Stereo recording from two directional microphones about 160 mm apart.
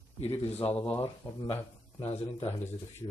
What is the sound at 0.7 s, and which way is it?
Speech, 10° left (ahead or behind).